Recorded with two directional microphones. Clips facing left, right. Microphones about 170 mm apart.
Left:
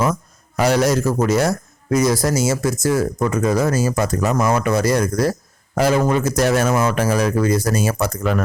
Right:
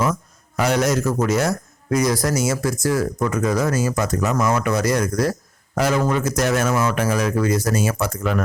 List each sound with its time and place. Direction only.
0.0 s speech: 35° left (ahead or behind)